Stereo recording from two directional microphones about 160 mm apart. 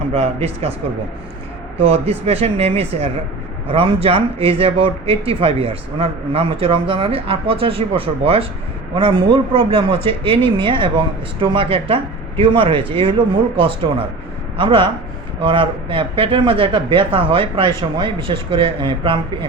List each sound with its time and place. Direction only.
0.1 s speech: 40° right (ahead or behind)
1.8 s speech: 40° right (ahead or behind)